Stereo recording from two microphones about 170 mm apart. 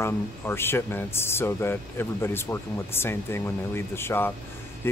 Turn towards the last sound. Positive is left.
turn(degrees=15)  # may be behind; listen again after turning